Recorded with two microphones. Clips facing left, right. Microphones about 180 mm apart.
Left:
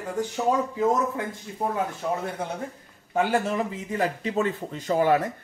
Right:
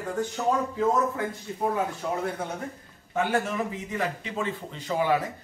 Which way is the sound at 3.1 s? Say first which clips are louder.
Left 3 dB; 35° left (ahead or behind).